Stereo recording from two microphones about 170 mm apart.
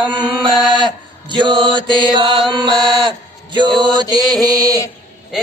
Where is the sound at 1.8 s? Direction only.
30° right (ahead or behind).